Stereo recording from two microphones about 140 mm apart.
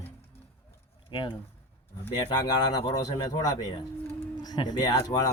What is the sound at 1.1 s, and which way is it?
A man's voice, 35° left (ahead or behind).